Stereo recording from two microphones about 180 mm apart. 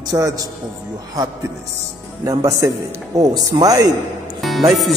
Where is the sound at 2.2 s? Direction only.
20° right (ahead or behind).